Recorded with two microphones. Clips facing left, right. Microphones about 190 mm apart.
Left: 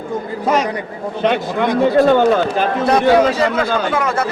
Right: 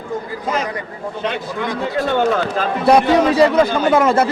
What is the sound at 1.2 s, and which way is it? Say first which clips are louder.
Speech: left 7 dB; 65° left (ahead or behind).